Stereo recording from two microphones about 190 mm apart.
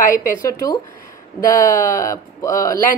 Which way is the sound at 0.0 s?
45° left (ahead or behind).